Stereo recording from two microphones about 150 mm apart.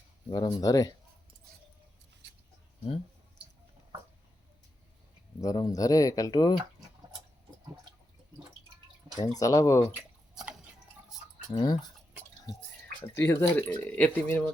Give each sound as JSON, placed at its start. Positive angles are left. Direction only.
{"t": 0.3, "sound": "speech", "side_deg": 25}
{"t": 5.4, "sound": "speech", "side_deg": 25}
{"t": 9.1, "sound": "speech", "side_deg": 25}
{"t": 11.5, "sound": "speech", "side_deg": 30}
{"t": 13.1, "sound": "speech", "side_deg": 15}